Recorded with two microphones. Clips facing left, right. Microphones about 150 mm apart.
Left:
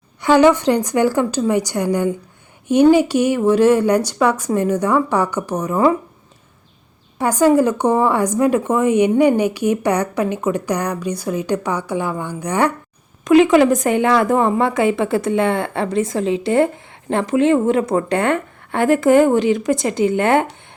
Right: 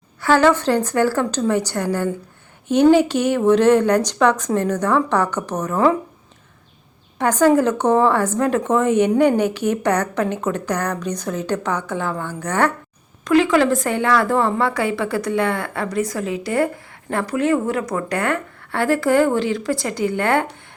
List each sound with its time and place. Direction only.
0.2 s speech: 15° left (ahead or behind)
7.2 s a woman's voice: 10° left (ahead or behind)